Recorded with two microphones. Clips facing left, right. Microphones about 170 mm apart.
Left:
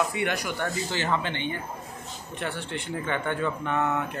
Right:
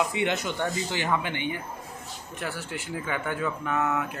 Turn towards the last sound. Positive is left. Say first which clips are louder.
# left 1 dB
turn(degrees=0)  # may be behind; listen again after turning